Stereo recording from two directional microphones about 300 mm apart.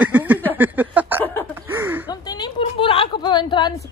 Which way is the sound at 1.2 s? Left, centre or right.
Centre.